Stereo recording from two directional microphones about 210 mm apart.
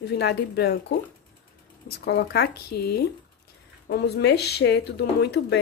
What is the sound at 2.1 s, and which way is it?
Speech, 50° left (ahead or behind).